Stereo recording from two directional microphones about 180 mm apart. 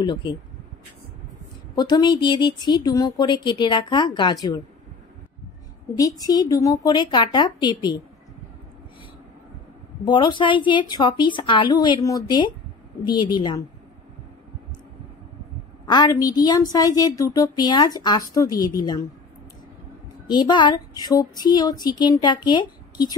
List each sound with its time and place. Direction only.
0.0 s speech: 25° left (ahead or behind)
1.8 s speech: 25° left (ahead or behind)
5.9 s speech: 20° left (ahead or behind)
10.0 s speech: 25° left (ahead or behind)
15.9 s speech: 20° left (ahead or behind)
20.2 s speech: 25° left (ahead or behind)